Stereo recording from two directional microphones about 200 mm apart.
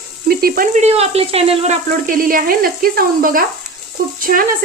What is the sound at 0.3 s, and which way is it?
Speech, 45° right (ahead or behind).